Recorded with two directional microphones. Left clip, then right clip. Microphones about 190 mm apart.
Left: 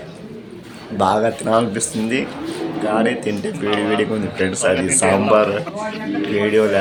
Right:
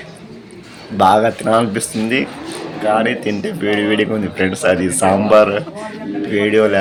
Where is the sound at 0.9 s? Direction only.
5° right (ahead or behind).